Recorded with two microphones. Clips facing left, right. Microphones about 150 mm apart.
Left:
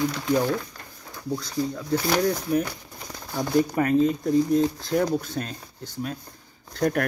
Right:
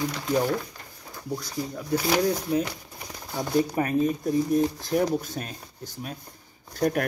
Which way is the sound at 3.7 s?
20° right (ahead or behind).